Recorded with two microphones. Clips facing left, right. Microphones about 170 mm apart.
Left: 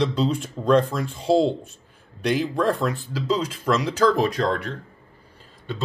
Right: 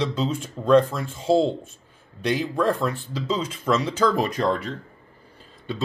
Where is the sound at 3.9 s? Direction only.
10° right (ahead or behind).